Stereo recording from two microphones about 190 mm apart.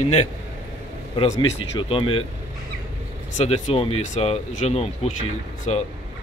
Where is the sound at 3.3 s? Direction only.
35° left (ahead or behind).